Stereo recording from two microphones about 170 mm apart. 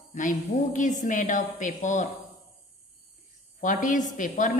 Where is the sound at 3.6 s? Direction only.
50° left (ahead or behind).